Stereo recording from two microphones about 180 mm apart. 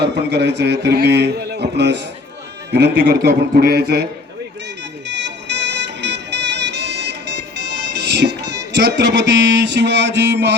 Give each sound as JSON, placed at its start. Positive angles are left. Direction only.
{"t": 0.0, "sound": "a man's voice", "side_deg": -70}
{"t": 5.0, "sound": "music", "side_deg": -75}
{"t": 7.5, "sound": "speech", "side_deg": -70}